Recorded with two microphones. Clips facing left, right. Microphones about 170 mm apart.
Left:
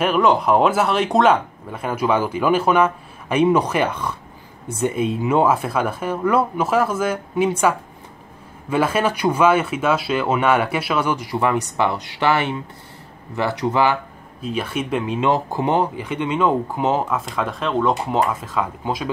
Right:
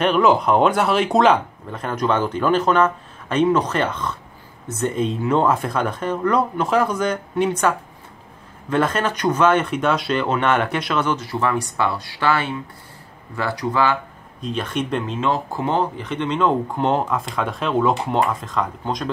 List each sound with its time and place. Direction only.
0.0 s speech: centre (ahead or behind); by 13.9 s 20° left (ahead or behind)
14.4 s speech: 10° left (ahead or behind)